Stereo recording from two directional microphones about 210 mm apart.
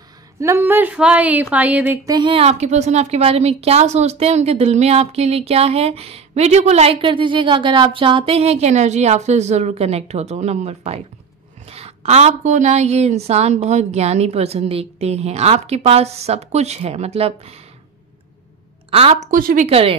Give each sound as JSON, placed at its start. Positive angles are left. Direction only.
{"t": 0.4, "sound": "a woman's voice", "side_deg": -10}
{"t": 2.0, "sound": "a woman's voice", "side_deg": -20}
{"t": 18.9, "sound": "a woman's voice", "side_deg": -25}
{"t": 19.3, "sound": "a woman's voice", "side_deg": -40}